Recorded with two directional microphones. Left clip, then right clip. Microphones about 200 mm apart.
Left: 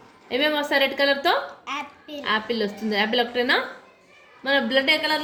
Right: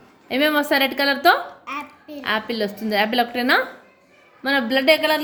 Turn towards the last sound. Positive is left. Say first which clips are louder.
# right 4 dB
turn(degrees=-55)  # may be behind; listen again after turning